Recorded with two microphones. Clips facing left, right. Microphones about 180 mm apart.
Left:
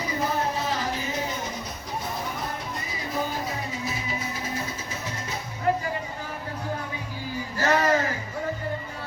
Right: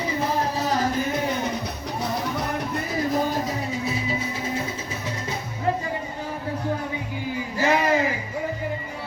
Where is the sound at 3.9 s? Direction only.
30° right (ahead or behind).